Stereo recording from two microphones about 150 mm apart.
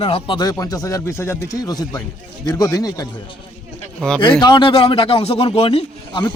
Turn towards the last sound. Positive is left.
turn(degrees=35)  # may be behind; listen again after turning